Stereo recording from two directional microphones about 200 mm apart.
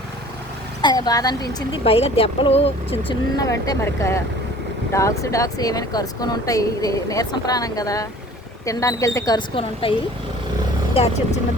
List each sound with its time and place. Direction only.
0.8 s speech: 20° left (ahead or behind)
3.3 s speech: 20° left (ahead or behind)
10.9 s speech: 30° left (ahead or behind)